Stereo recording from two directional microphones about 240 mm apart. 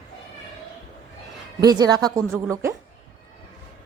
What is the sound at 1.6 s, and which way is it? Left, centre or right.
Speech, centre.